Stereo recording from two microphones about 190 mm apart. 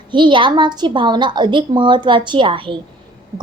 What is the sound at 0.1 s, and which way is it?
A child's voice, 25° right (ahead or behind).